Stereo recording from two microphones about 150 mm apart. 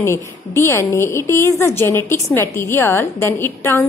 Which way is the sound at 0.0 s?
20° left (ahead or behind).